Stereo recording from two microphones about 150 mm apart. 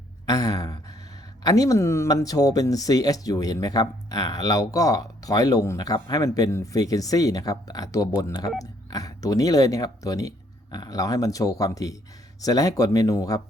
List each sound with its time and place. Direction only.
0.3 s speech: 25° left (ahead or behind)